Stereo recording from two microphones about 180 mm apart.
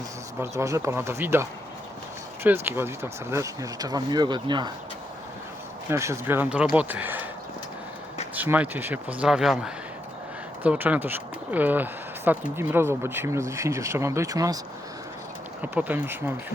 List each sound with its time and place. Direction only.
0.3 s speech: 15° right (ahead or behind)
5.9 s speech: 15° right (ahead or behind)
8.4 s speech: 10° right (ahead or behind)
15.6 s speech: 10° right (ahead or behind)